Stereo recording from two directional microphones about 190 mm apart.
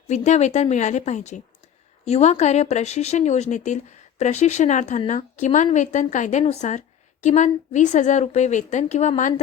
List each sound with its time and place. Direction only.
0.1 s a woman's voice: 35° left (ahead or behind)